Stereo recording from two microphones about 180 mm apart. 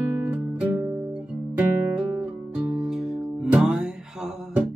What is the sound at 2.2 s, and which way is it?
Music, 5° right (ahead or behind).